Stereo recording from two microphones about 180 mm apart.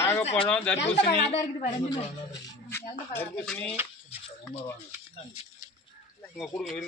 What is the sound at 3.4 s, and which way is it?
Speech, 10° left (ahead or behind).